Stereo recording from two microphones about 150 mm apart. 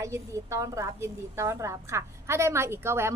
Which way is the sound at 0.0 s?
20° right (ahead or behind).